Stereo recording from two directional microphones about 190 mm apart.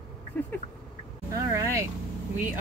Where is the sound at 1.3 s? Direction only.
15° right (ahead or behind).